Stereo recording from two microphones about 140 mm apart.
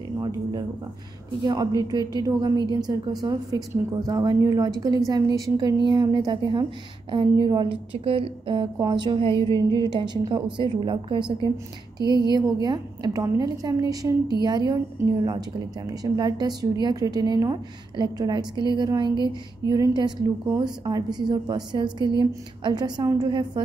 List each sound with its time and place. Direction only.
1.4 s a woman's voice: 25° right (ahead or behind)
12.6 s a woman's voice: 30° right (ahead or behind)